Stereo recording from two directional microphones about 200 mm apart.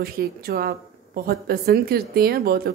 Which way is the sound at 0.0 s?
50° right (ahead or behind).